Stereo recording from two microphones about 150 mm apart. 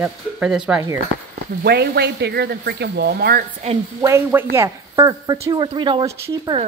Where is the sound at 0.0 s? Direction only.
5° right (ahead or behind).